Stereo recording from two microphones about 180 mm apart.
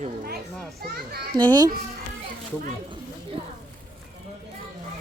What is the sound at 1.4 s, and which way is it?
Speech, 25° right (ahead or behind).